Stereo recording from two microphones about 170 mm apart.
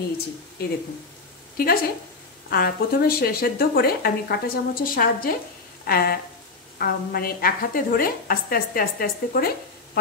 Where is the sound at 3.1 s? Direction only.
65° left (ahead or behind).